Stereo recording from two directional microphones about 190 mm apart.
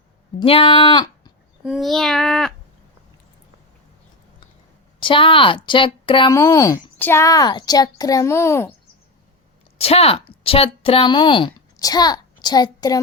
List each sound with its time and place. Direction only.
0.3 s speech: 30° left (ahead or behind)
1.6 s a child's voice: centre (ahead or behind)
4.9 s a woman's voice: 25° left (ahead or behind)
9.7 s a woman's voice: 30° left (ahead or behind)